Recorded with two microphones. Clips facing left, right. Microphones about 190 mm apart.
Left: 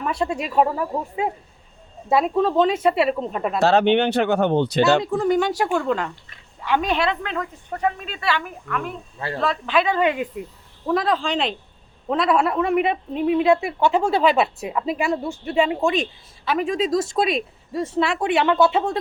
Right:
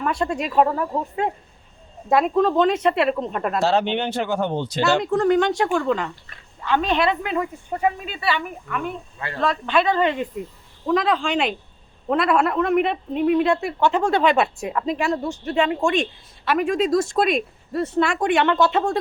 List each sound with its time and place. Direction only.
0.0 s a woman's voice: 5° left (ahead or behind)
3.6 s speech: 65° left (ahead or behind)
5.1 s a woman's voice: 5° left (ahead or behind)
7.0 s a woman's voice: 5° right (ahead or behind)